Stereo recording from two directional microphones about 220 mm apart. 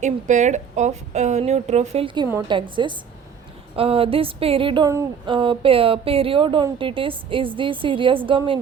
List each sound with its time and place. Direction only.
0.0 s speech: 35° right (ahead or behind)